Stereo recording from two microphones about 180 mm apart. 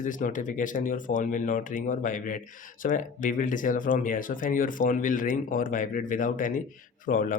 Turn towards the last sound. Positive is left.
turn(degrees=50)  # may be behind; listen again after turning